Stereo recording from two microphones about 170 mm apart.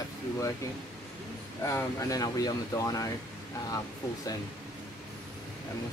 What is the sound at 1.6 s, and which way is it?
Speech, 20° left (ahead or behind).